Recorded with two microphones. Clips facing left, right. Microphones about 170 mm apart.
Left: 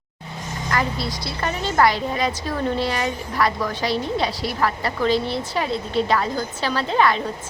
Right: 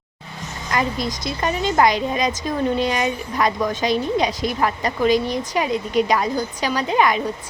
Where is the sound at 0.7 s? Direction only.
20° right (ahead or behind).